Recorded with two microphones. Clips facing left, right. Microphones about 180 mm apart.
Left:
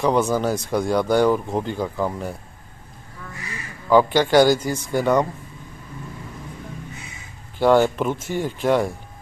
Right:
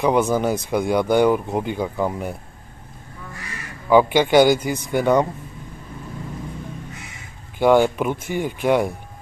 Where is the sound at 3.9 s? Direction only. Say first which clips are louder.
Right 1 dB; 15° right (ahead or behind).